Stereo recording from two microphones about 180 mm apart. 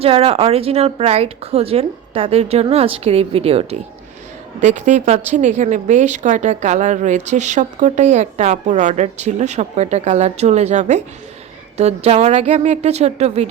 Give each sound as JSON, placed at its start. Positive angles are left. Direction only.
{"t": 0.0, "sound": "a woman's voice", "side_deg": -35}